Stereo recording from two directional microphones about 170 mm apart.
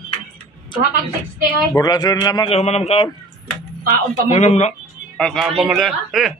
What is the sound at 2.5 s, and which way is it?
Speech, 40° left (ahead or behind).